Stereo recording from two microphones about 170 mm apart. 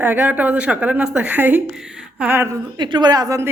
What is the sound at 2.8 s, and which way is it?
Speech, 25° right (ahead or behind).